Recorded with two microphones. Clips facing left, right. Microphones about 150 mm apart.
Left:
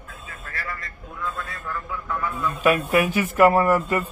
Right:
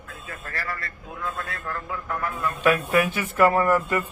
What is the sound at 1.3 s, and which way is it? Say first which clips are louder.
Vehicle: right 1 dB; 70° right (ahead or behind).